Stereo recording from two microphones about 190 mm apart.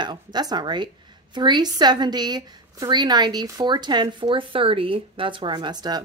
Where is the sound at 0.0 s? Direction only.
20° right (ahead or behind).